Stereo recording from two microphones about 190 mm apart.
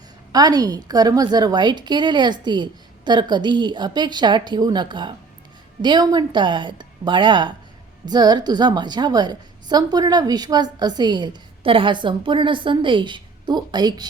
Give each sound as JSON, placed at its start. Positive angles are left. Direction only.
{"t": 0.3, "sound": "a woman's voice", "side_deg": -20}